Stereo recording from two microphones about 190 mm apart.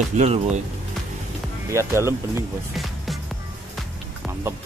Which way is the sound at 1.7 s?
15° right (ahead or behind).